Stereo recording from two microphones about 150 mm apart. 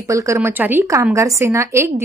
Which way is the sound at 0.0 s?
20° right (ahead or behind).